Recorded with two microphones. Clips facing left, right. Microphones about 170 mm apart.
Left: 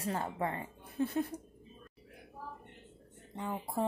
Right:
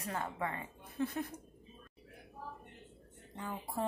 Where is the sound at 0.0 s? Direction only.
30° left (ahead or behind).